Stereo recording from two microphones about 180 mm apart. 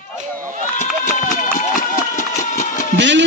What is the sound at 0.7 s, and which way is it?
Run, 45° left (ahead or behind).